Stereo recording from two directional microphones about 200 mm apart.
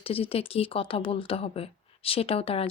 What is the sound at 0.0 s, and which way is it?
Speech, 30° left (ahead or behind).